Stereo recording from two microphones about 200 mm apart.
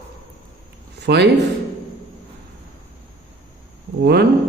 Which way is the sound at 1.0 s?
55° right (ahead or behind).